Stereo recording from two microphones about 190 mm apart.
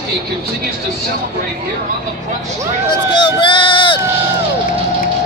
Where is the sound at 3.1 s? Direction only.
25° left (ahead or behind).